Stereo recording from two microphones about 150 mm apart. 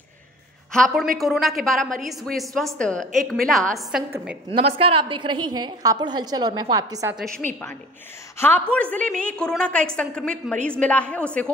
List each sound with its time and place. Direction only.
0.7 s a woman's voice: centre (ahead or behind)
4.6 s a woman's voice: 40° right (ahead or behind); by 7.2 s 25° right (ahead or behind)
8.4 s a woman's voice: 15° left (ahead or behind)